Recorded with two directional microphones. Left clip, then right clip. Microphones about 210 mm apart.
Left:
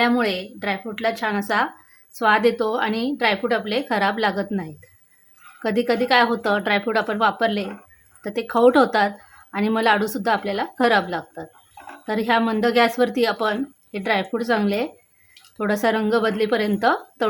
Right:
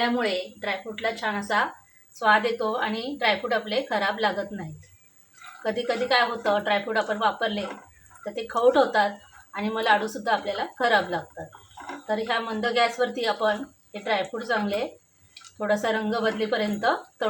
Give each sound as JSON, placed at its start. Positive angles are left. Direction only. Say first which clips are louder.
{"t": 0.0, "sound": "speech", "louder": "left 5 dB", "side_deg": 40}
{"t": 5.6, "sound": "speech", "louder": "left 5 dB", "side_deg": 50}